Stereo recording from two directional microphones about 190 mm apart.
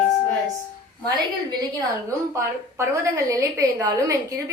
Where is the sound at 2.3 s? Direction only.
15° right (ahead or behind).